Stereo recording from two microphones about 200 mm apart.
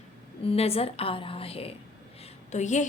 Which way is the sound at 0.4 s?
30° left (ahead or behind).